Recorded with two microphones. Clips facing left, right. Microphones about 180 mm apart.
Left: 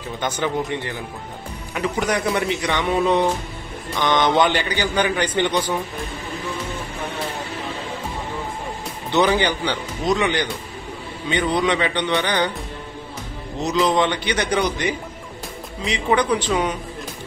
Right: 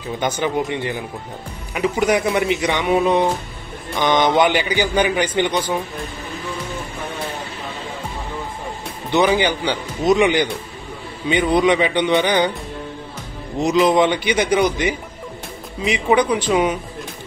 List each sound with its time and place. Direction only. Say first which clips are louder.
0.2 s a man's voice: right 2 dB; 15° right (ahead or behind)
9.1 s a man's voice: right 2 dB; 10° right (ahead or behind)
13.6 s a man's voice: right 4 dB; 10° right (ahead or behind)